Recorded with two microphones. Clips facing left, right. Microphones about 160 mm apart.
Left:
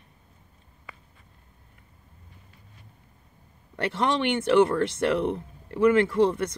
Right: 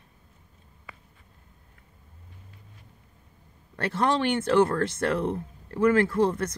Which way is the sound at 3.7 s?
20° left (ahead or behind).